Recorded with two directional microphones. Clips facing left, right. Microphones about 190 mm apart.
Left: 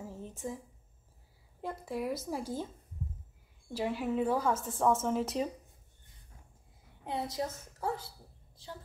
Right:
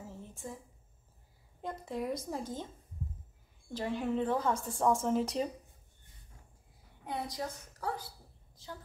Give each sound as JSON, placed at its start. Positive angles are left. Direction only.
{"t": 0.1, "sound": "a sound", "side_deg": 15}
{"t": 1.6, "sound": "speech", "side_deg": 5}
{"t": 3.7, "sound": "a woman's voice", "side_deg": 5}
{"t": 7.1, "sound": "a woman's voice", "side_deg": 25}